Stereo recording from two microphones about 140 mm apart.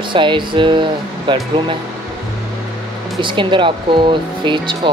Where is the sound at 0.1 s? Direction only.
35° right (ahead or behind).